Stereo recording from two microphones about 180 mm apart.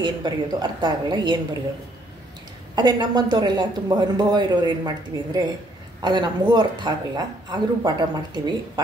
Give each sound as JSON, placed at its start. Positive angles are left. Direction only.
{"t": 0.0, "sound": "a woman's voice", "side_deg": -25}
{"t": 2.7, "sound": "a woman's voice", "side_deg": -25}